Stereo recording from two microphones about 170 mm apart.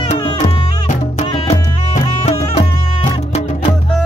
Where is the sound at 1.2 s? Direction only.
45° left (ahead or behind).